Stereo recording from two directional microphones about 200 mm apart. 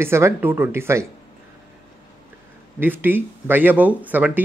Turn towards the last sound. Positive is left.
turn(degrees=-10)  # may be behind; listen again after turning